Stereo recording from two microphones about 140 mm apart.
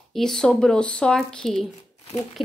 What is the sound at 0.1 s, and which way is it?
Speech, 5° left (ahead or behind).